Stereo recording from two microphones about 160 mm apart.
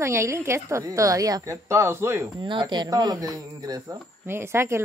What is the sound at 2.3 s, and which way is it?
A woman's voice, 30° right (ahead or behind).